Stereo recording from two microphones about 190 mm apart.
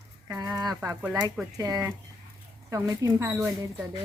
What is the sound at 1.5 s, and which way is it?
A woman's voice, 20° right (ahead or behind).